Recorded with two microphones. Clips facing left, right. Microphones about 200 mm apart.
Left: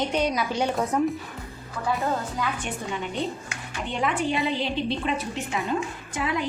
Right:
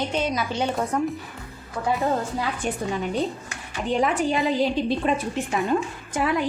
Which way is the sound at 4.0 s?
40° right (ahead or behind).